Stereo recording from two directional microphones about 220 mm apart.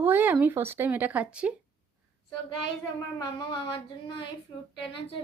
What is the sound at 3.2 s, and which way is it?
Speech, 20° left (ahead or behind).